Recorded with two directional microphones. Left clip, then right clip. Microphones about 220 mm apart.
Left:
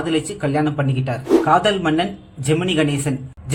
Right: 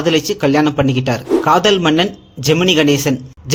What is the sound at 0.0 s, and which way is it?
A man's voice, 45° right (ahead or behind).